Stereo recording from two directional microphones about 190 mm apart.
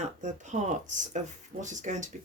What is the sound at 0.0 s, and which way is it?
Speech, 40° right (ahead or behind).